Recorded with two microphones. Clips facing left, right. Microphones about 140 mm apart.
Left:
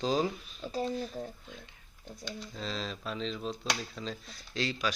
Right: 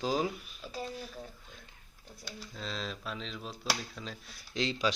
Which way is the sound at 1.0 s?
30° left (ahead or behind).